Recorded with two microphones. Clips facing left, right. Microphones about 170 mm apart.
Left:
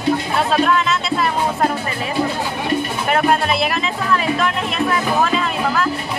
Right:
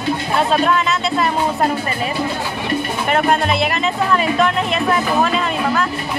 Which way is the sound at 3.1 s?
Centre (ahead or behind).